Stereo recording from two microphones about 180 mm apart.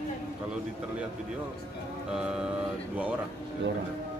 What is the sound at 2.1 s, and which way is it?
Speech, 5° right (ahead or behind).